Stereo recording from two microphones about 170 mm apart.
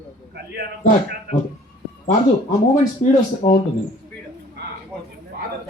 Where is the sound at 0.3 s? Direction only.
70° right (ahead or behind).